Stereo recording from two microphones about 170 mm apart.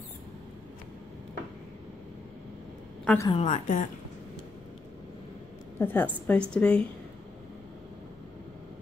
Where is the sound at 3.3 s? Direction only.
40° left (ahead or behind).